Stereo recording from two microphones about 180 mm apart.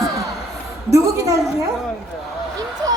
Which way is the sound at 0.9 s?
15° right (ahead or behind).